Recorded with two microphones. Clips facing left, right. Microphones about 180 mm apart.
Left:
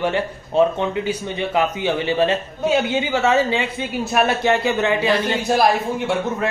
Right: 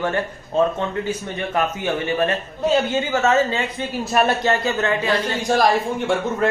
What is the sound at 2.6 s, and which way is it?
A man's voice, 5° left (ahead or behind).